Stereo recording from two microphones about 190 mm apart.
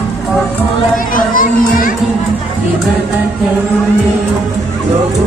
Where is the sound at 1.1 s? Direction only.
45° left (ahead or behind).